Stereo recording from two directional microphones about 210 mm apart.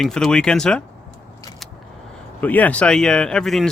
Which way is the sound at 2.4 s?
5° left (ahead or behind).